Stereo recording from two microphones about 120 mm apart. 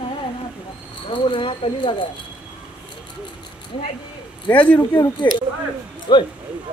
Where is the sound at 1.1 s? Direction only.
45° left (ahead or behind).